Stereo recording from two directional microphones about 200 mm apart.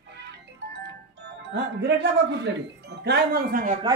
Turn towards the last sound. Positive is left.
turn(degrees=-45)  # may be behind; listen again after turning